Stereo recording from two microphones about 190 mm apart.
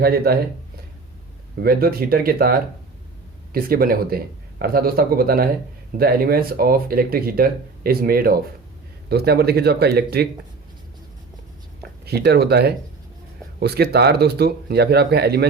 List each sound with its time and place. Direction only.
0.0 s speech: 55° right (ahead or behind)
1.5 s speech: 55° right (ahead or behind)
11.8 s speech: 60° right (ahead or behind)